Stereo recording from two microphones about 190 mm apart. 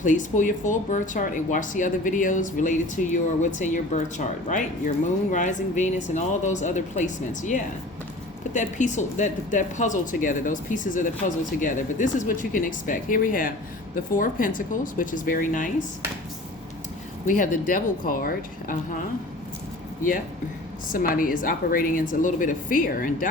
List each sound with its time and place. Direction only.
0.0 s speech: 40° left (ahead or behind)
17.2 s speech: 45° left (ahead or behind)
20.0 s speech: 45° left (ahead or behind)